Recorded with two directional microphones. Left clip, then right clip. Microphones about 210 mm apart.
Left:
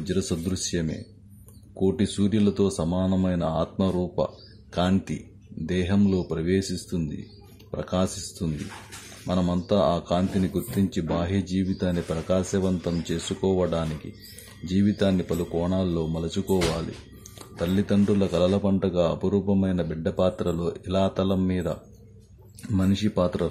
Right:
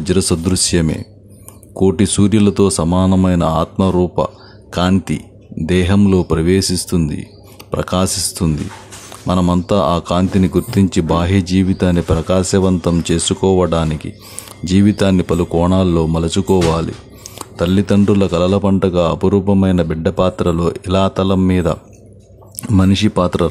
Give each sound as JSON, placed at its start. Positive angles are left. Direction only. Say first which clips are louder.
{"t": 0.0, "sound": "speech", "louder": "right 12 dB", "side_deg": -20}